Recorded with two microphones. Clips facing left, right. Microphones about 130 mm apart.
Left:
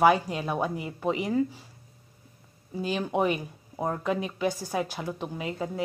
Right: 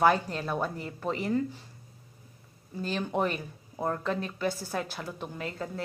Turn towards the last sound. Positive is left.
turn(degrees=10)  # may be behind; listen again after turning